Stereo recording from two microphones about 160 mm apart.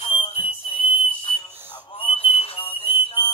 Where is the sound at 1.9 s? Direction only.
35° left (ahead or behind).